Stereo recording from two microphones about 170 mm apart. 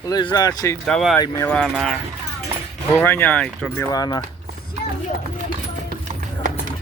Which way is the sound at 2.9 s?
10° left (ahead or behind).